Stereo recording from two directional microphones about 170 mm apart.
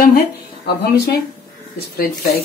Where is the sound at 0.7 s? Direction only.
70° left (ahead or behind).